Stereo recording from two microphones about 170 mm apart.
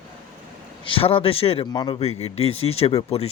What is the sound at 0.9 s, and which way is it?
Speech, 35° left (ahead or behind).